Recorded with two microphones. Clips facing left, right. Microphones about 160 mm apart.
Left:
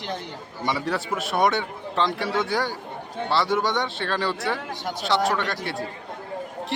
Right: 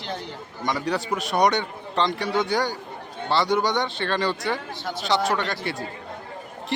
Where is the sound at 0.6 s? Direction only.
Centre (ahead or behind).